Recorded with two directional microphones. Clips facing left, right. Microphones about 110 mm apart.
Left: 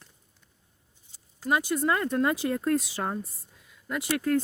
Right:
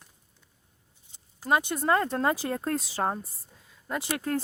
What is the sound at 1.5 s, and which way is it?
Speech, 30° right (ahead or behind).